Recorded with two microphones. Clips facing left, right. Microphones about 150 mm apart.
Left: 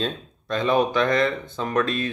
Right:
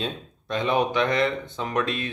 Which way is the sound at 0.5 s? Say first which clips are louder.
Left 2 dB; 20° right (ahead or behind).